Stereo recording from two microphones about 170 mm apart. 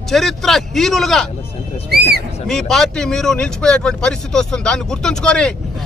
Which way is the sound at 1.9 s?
70° right (ahead or behind).